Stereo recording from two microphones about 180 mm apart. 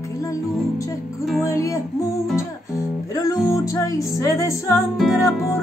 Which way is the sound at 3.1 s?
20° left (ahead or behind).